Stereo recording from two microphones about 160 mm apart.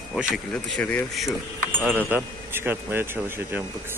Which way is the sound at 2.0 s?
10° right (ahead or behind).